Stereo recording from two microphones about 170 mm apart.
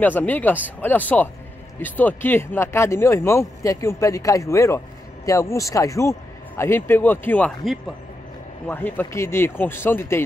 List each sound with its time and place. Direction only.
0.0 s speech: 10° left (ahead or behind)